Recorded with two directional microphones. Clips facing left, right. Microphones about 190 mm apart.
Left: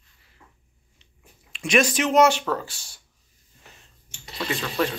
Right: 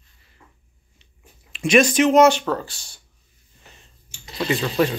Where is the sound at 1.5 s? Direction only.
Centre (ahead or behind).